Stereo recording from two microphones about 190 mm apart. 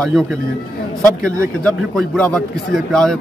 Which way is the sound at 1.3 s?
5° left (ahead or behind).